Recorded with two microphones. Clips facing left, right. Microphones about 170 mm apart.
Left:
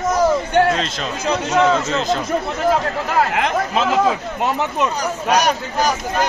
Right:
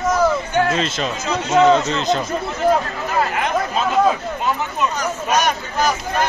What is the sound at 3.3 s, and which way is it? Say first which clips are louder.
Speech: left 1 dB; 90° left.